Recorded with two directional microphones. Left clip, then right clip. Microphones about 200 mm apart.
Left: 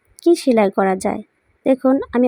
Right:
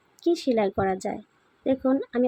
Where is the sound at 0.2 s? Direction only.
40° left (ahead or behind).